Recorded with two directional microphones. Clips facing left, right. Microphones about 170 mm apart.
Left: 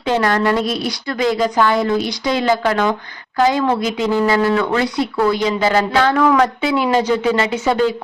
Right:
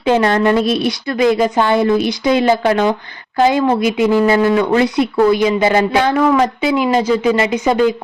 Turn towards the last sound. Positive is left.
turn(degrees=-15)  # may be behind; listen again after turning